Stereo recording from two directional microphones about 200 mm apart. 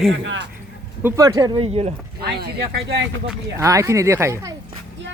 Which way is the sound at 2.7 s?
60° right (ahead or behind).